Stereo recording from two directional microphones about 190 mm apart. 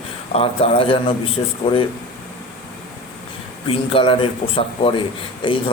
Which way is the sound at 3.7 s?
30° left (ahead or behind).